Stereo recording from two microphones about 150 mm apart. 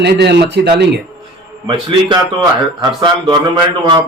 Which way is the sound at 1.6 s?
35° right (ahead or behind).